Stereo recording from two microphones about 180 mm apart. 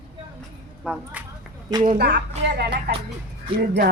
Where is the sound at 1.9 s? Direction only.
65° right (ahead or behind).